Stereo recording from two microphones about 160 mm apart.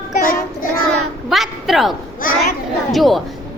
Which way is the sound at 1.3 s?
Centre (ahead or behind).